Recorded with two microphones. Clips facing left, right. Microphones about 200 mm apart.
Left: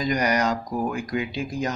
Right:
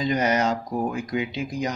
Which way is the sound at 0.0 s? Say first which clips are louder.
Right 1 dB; 25° right (ahead or behind).